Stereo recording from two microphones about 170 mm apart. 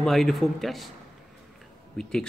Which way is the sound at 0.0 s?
Centre (ahead or behind).